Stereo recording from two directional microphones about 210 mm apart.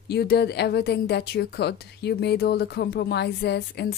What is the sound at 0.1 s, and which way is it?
A woman's voice, 50° left (ahead or behind).